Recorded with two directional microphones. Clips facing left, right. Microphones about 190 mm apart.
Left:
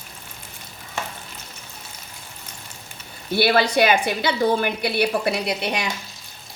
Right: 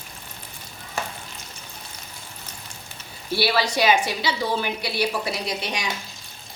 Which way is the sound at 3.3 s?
55° left (ahead or behind).